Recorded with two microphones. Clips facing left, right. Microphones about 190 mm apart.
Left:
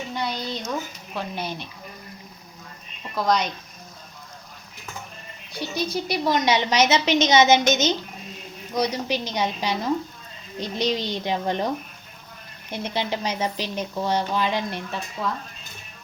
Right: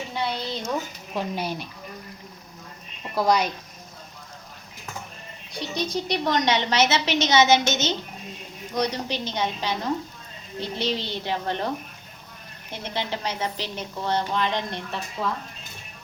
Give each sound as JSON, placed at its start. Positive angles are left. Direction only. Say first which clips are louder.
{"t": 0.2, "sound": "a sound", "louder": "right 1 dB", "side_deg": -5}
{"t": 1.1, "sound": "speech", "louder": "right 2 dB", "side_deg": -10}
{"t": 3.2, "sound": "speech", "louder": "right 1 dB", "side_deg": -10}
{"t": 5.5, "sound": "a woman's voice", "louder": "left 1 dB", "side_deg": 5}
{"t": 12.7, "sound": "a woman's voice", "louder": "left 3 dB", "side_deg": 15}